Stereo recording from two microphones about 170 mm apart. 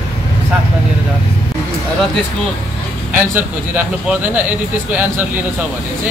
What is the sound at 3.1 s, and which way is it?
Speech, 10° right (ahead or behind).